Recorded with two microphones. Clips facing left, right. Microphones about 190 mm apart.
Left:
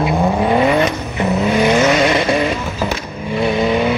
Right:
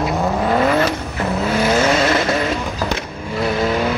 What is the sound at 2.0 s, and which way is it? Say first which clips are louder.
Vehicle: left 2 dB; 20° left (ahead or behind).